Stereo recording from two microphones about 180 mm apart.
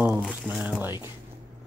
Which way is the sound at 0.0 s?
5° right (ahead or behind).